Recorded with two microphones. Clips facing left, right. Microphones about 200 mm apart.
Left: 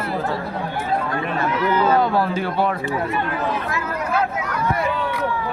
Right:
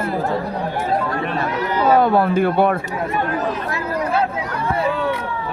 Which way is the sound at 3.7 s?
30° right (ahead or behind).